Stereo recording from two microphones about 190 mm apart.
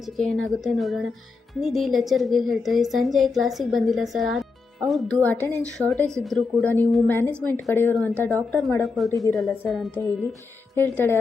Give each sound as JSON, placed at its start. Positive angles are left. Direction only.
{"t": 0.0, "sound": "a woman's voice", "side_deg": 0}
{"t": 9.6, "sound": "a woman's voice", "side_deg": 0}
{"t": 10.8, "sound": "a woman's voice", "side_deg": 10}